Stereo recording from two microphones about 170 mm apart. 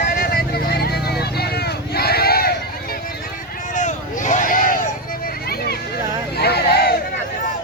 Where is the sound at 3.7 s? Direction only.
45° left (ahead or behind).